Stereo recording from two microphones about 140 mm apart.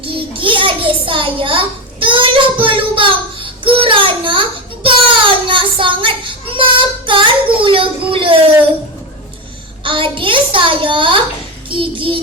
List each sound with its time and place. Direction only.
0.0 s a sound: 40° right (ahead or behind)
9.8 s a child's voice: 40° right (ahead or behind)
11.7 s child singing: 40° right (ahead or behind)